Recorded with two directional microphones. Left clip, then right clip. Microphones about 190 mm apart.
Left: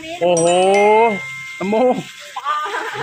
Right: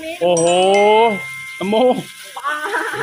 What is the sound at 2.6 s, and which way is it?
Music, 40° right (ahead or behind).